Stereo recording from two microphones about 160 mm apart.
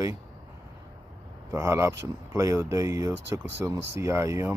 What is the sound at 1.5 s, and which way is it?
Speech, 15° right (ahead or behind).